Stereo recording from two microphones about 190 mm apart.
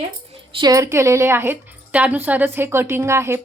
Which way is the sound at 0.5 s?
20° right (ahead or behind).